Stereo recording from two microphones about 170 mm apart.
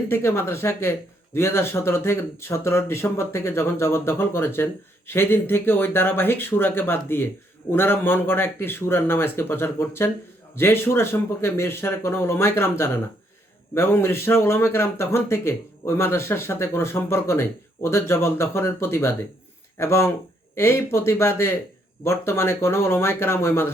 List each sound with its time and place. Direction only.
0.1 s speech: 15° left (ahead or behind)